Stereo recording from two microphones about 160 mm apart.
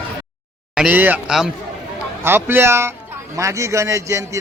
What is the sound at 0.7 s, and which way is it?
A man's voice, 5° right (ahead or behind).